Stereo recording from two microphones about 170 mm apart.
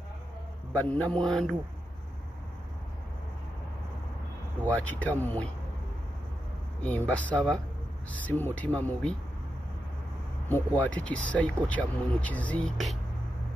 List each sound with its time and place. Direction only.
0.7 s speech: 10° left (ahead or behind)
4.7 s speech: 10° left (ahead or behind)
7.1 s speech: 10° left (ahead or behind)
10.5 s speech: 10° left (ahead or behind)